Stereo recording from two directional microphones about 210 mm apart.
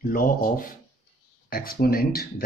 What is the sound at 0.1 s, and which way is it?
Speech, 40° left (ahead or behind).